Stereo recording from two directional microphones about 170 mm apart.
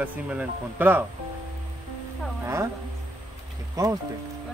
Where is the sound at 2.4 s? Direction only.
15° right (ahead or behind).